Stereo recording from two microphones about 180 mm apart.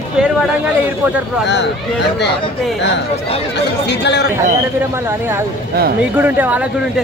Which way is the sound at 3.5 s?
75° left (ahead or behind).